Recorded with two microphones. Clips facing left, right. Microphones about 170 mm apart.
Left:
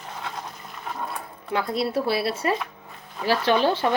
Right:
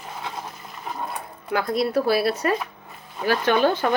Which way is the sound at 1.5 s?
30° left (ahead or behind).